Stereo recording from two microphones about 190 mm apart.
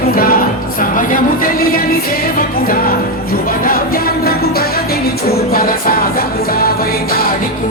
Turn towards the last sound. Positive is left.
turn(degrees=50)  # may be behind; listen again after turning